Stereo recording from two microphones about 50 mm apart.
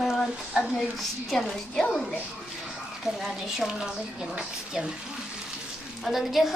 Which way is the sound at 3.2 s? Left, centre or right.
Centre.